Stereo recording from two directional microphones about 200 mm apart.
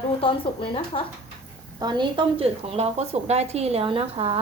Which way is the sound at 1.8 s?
20° right (ahead or behind).